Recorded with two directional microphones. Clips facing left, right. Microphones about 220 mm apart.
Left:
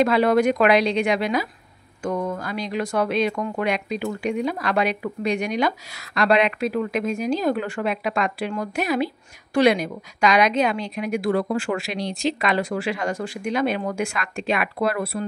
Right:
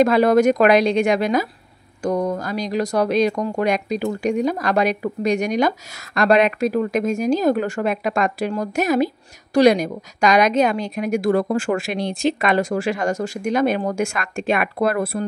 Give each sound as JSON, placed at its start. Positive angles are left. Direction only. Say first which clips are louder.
{"t": 0.0, "sound": "speech", "louder": "right 3 dB", "side_deg": -45}